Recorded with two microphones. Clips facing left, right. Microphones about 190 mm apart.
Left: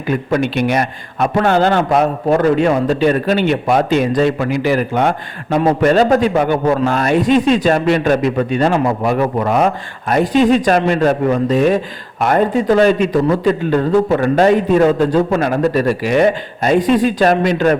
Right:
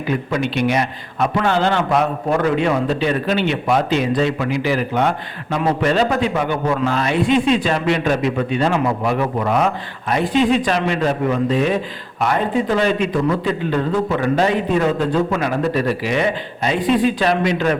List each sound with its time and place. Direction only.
0.1 s a man's voice: 50° left (ahead or behind)